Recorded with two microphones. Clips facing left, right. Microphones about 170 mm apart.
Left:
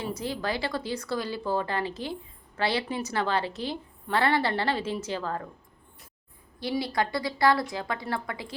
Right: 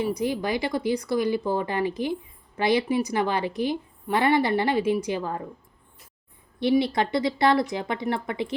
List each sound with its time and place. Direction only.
0.0 s a woman's voice: 15° right (ahead or behind)
6.6 s a woman's voice: 20° right (ahead or behind)